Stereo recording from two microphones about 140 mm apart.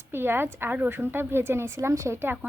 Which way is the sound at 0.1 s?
15° right (ahead or behind).